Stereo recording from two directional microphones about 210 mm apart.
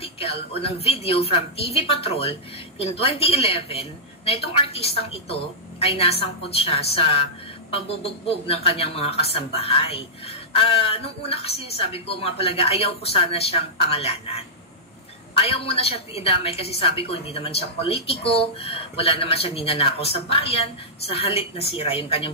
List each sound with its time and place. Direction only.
0.0 s speech: 25° left (ahead or behind)
15.4 s speech: 25° left (ahead or behind)